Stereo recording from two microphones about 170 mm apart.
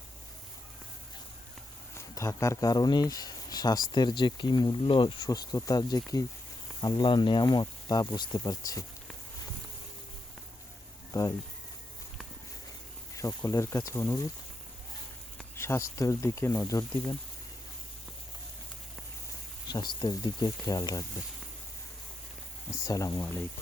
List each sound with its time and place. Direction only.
2.0 s speech: 15° left (ahead or behind)
11.1 s speech: 20° left (ahead or behind)
13.1 s speech: 20° left (ahead or behind)
15.5 s speech: 15° left (ahead or behind)
19.6 s speech: 25° left (ahead or behind)
22.7 s speech: 20° left (ahead or behind)